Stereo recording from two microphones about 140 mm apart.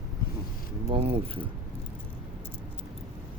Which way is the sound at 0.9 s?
40° right (ahead or behind).